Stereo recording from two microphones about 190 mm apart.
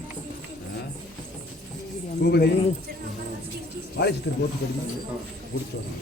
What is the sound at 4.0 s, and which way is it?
Speech, 60° left (ahead or behind).